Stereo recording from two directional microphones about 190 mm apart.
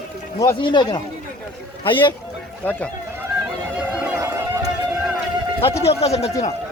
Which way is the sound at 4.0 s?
15° right (ahead or behind).